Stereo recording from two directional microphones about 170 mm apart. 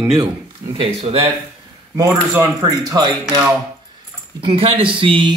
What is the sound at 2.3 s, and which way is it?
Speech, 20° right (ahead or behind).